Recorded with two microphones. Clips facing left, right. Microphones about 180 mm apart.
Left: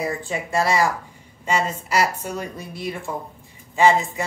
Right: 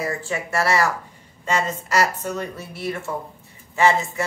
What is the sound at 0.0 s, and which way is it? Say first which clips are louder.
Speech: even; 15° left (ahead or behind).